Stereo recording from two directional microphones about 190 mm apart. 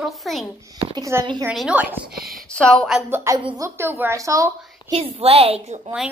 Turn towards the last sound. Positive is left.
turn(degrees=-35)  # may be behind; listen again after turning